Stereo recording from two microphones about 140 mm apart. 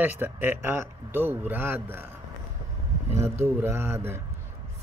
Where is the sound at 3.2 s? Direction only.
20° right (ahead or behind).